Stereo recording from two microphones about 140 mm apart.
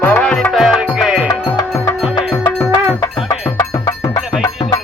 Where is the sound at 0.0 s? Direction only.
10° left (ahead or behind); by 1.3 s 5° right (ahead or behind).